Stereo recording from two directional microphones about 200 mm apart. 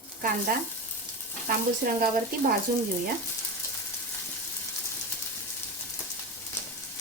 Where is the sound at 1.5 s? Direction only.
45° right (ahead or behind).